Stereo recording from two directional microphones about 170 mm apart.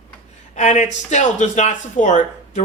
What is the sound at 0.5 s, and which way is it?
Speech, 45° left (ahead or behind).